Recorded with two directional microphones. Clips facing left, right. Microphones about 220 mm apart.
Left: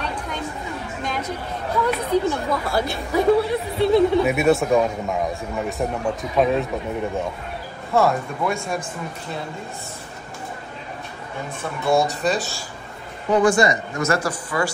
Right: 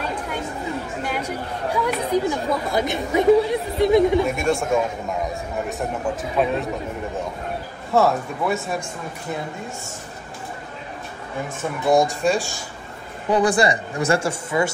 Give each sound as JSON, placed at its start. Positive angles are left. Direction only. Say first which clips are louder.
{"t": 1.0, "sound": "speech", "louder": "left 2 dB", "side_deg": -10}
{"t": 4.3, "sound": "speech", "louder": "left 3 dB", "side_deg": 5}
{"t": 7.9, "sound": "speech", "louder": "right 1 dB", "side_deg": 0}
{"t": 11.9, "sound": "speech", "louder": "right 2 dB", "side_deg": -15}
{"t": 13.4, "sound": "speech", "louder": "left 2 dB", "side_deg": -35}